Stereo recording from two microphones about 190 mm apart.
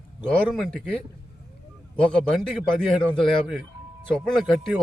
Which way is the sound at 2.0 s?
5° left (ahead or behind).